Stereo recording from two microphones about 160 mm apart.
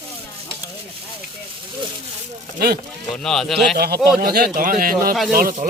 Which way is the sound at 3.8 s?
75° right (ahead or behind).